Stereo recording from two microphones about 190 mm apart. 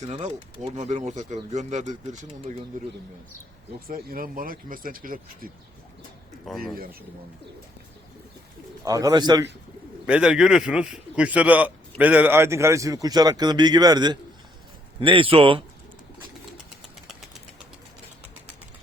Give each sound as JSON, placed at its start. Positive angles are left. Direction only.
{"t": 0.1, "sound": "speech", "side_deg": -30}
{"t": 2.7, "sound": "speech", "side_deg": -45}
{"t": 6.4, "sound": "speech", "side_deg": 0}
{"t": 8.8, "sound": "speech", "side_deg": -20}
{"t": 10.1, "sound": "a man's voice", "side_deg": -5}